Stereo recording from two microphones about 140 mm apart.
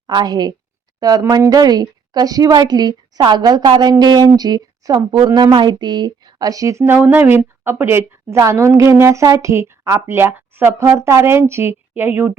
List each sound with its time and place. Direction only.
0.1 s speech: 30° right (ahead or behind)